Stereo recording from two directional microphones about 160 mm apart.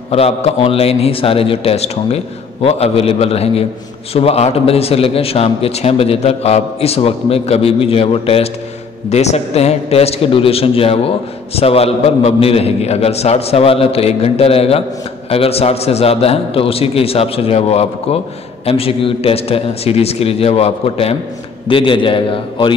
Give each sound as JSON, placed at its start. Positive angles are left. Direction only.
{"t": 0.1, "sound": "a man's voice", "side_deg": 40}